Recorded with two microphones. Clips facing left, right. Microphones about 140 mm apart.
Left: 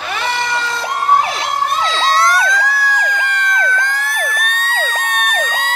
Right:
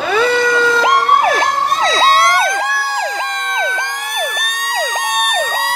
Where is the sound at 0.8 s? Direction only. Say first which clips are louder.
Right 5 dB; 90° right.